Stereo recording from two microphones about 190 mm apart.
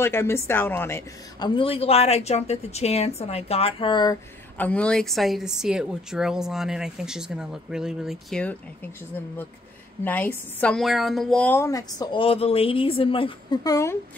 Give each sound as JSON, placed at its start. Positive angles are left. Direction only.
{"t": 0.0, "sound": "a woman's voice", "side_deg": 15}
{"t": 1.5, "sound": "a woman's voice", "side_deg": 30}
{"t": 4.6, "sound": "a woman's voice", "side_deg": 5}
{"t": 10.0, "sound": "a woman's voice", "side_deg": 10}